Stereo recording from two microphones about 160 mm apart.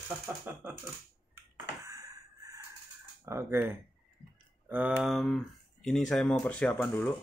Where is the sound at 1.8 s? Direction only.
20° right (ahead or behind).